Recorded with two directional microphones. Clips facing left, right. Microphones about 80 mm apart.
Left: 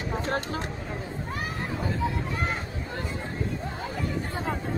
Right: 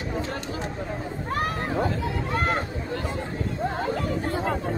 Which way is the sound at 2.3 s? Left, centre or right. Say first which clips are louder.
Right 5 dB; right.